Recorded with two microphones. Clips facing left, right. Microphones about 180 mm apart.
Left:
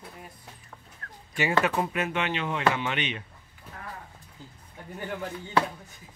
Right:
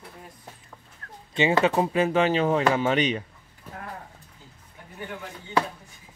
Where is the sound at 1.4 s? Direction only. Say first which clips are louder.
Right 4 dB; 25° right (ahead or behind).